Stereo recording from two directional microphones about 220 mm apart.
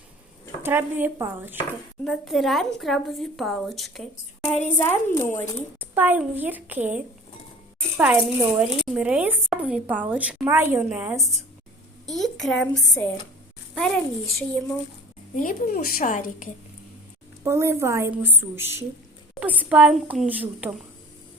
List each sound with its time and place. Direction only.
0.6 s a woman's voice: 10° right (ahead or behind); by 5.5 s 10° left (ahead or behind)
5.8 s a woman's voice: 10° right (ahead or behind)
15.4 s a woman's voice: 40° left (ahead or behind)
17.4 s a woman's voice: 10° right (ahead or behind)